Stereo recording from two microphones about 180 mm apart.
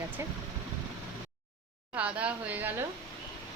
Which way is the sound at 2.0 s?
5° right (ahead or behind).